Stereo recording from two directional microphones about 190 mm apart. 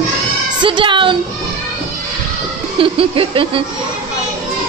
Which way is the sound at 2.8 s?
30° right (ahead or behind).